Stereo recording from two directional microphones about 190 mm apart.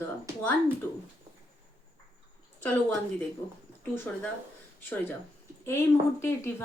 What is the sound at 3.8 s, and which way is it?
Speech, 10° left (ahead or behind).